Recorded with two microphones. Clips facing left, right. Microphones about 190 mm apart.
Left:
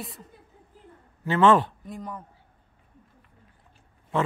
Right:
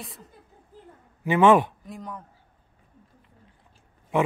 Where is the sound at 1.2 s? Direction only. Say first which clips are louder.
Right 2 dB; 15° right (ahead or behind).